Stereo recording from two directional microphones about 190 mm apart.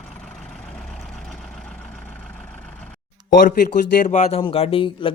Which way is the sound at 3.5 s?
40° left (ahead or behind).